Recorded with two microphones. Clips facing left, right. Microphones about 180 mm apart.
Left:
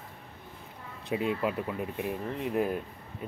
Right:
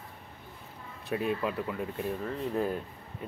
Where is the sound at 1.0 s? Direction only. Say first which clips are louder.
Left 1 dB; 20° left (ahead or behind).